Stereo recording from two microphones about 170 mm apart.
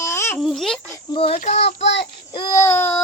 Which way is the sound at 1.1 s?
30° left (ahead or behind).